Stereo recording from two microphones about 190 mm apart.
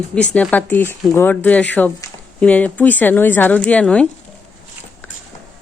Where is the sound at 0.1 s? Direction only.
5° left (ahead or behind).